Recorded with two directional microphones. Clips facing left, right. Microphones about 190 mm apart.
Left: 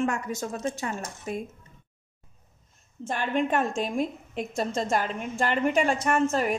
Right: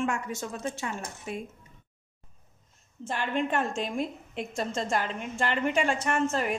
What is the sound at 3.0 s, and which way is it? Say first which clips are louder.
A woman's voice: left 3 dB; 45° left (ahead or behind).